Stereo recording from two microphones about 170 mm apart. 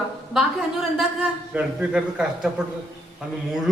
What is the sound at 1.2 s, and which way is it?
A woman's voice, 5° right (ahead or behind).